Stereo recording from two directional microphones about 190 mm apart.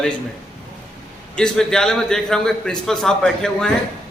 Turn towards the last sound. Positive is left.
turn(degrees=5)  # may be behind; listen again after turning